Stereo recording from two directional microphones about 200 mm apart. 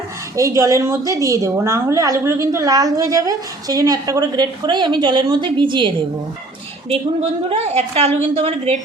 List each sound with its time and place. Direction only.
0.3 s a woman's voice: 15° right (ahead or behind)
6.9 s a woman's voice: 30° right (ahead or behind)